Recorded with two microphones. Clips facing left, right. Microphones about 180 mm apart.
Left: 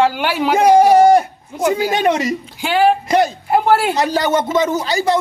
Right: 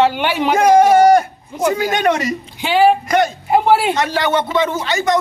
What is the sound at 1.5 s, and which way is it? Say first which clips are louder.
Speech: even; 5° left (ahead or behind).